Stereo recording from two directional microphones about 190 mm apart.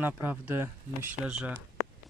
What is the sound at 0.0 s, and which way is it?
Speech, 10° right (ahead or behind).